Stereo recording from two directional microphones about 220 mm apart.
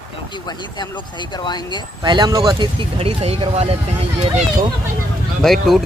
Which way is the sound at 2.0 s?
20° right (ahead or behind).